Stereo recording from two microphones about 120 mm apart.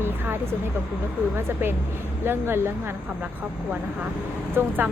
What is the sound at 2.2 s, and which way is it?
Speech, 20° right (ahead or behind).